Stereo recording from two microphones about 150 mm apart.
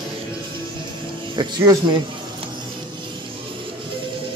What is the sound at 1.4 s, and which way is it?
Speech, 30° right (ahead or behind).